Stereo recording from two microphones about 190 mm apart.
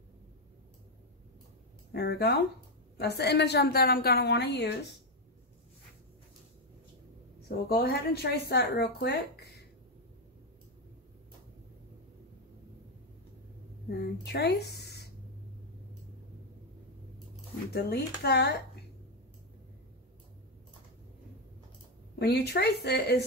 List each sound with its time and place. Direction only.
1.9 s a woman's voice: 60° left (ahead or behind)
7.4 s a woman's voice: 55° left (ahead or behind)
13.8 s speech: 60° left (ahead or behind)
17.7 s a woman's voice: 55° left (ahead or behind)
22.2 s a woman's voice: 60° left (ahead or behind)